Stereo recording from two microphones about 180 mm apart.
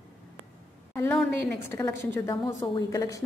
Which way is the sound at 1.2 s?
10° left (ahead or behind).